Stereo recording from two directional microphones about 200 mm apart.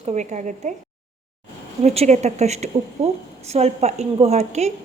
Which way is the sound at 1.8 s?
35° right (ahead or behind).